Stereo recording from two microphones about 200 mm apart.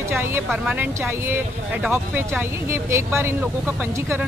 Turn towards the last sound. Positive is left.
turn(degrees=-15)  # may be behind; listen again after turning